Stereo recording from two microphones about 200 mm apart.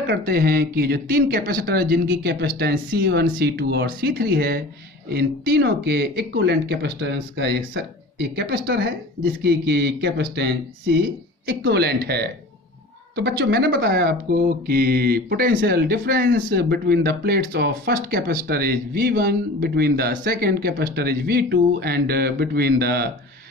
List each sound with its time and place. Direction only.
0.0 s speech: 55° right (ahead or behind)
3.1 s speech: 55° right (ahead or behind)
11.4 s speech: 55° right (ahead or behind)